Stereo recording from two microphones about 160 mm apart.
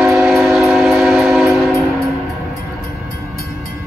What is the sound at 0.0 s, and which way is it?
Train, centre (ahead or behind).